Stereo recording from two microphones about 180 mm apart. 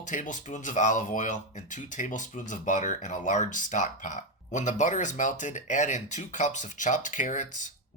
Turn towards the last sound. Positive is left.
turn(degrees=45)  # may be behind; listen again after turning